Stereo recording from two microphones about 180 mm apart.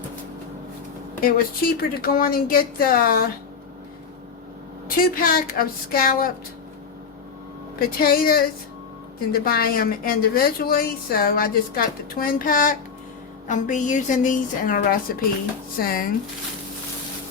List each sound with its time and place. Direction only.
1.2 s speech: 55° left (ahead or behind)
4.9 s speech: 50° left (ahead or behind)
7.8 s a woman's voice: 55° left (ahead or behind)